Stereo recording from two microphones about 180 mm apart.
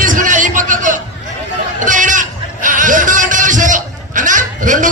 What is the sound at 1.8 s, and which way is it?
Music, 45° right (ahead or behind).